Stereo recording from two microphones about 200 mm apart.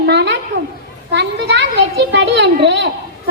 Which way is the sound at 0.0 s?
60° right (ahead or behind).